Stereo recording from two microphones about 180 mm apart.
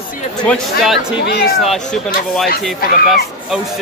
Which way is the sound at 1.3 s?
65° left (ahead or behind).